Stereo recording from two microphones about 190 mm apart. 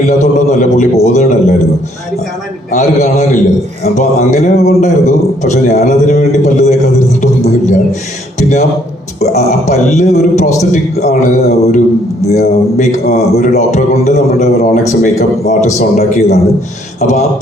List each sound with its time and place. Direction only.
0.2 s a man's voice: 40° left (ahead or behind)
2.7 s a man's voice: 40° left (ahead or behind)
7.2 s a sound: 40° left (ahead or behind)
8.4 s a man's voice: 40° left (ahead or behind)